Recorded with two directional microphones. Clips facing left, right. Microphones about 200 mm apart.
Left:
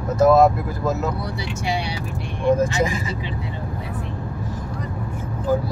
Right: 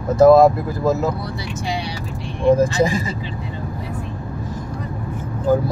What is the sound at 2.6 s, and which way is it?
Speech, 30° right (ahead or behind).